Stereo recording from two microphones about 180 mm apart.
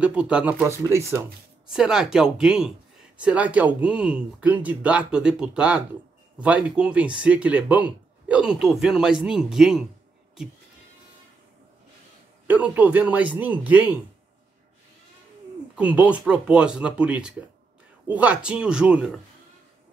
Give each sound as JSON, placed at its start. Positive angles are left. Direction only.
{"t": 0.0, "sound": "speech", "side_deg": -5}
{"t": 1.7, "sound": "speech", "side_deg": -5}
{"t": 12.4, "sound": "speech", "side_deg": -10}
{"t": 15.7, "sound": "speech", "side_deg": -5}